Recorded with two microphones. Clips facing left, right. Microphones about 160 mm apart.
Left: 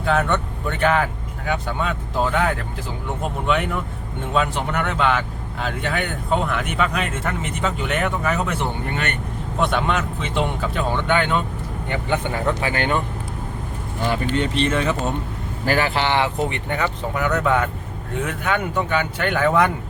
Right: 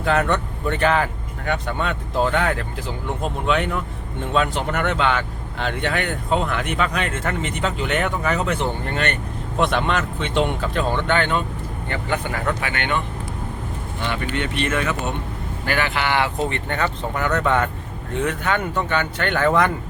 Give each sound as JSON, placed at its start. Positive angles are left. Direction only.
{"t": 0.0, "sound": "speech", "side_deg": 0}
{"t": 9.7, "sound": "speech", "side_deg": 5}
{"t": 14.3, "sound": "speech", "side_deg": 35}